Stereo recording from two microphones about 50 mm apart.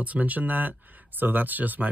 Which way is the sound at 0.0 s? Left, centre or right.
Right.